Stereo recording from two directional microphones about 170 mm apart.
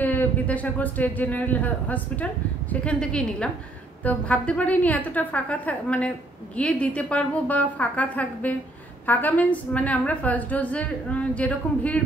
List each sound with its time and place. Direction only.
0.0 s a woman's voice: 10° left (ahead or behind)